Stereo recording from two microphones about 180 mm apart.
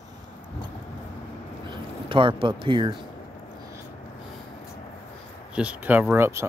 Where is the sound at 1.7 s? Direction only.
25° right (ahead or behind).